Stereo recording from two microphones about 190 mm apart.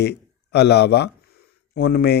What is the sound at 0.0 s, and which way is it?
Speech, 60° left (ahead or behind).